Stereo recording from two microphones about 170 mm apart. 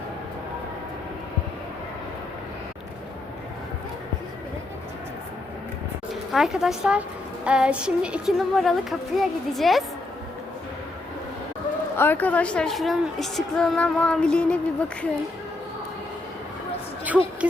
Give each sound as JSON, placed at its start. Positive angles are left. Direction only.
{"t": 6.3, "sound": "a woman's voice", "side_deg": 0}
{"t": 11.9, "sound": "a woman's voice", "side_deg": 10}
{"t": 17.4, "sound": "speech", "side_deg": -10}